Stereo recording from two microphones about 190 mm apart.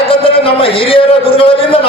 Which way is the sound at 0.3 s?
30° left (ahead or behind).